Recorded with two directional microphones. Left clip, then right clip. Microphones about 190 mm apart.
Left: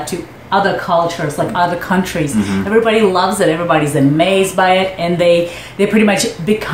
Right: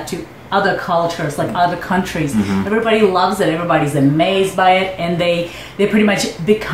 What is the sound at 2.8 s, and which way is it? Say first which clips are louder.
Speech: right 2 dB; 20° left (ahead or behind).